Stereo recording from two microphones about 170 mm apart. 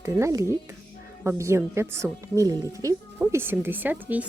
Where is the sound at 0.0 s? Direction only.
15° right (ahead or behind).